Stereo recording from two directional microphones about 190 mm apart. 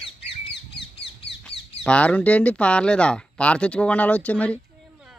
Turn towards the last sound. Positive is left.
turn(degrees=10)  # may be behind; listen again after turning